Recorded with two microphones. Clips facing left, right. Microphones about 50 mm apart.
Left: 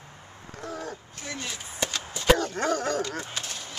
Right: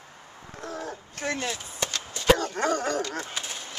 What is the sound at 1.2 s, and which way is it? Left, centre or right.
Chop, right.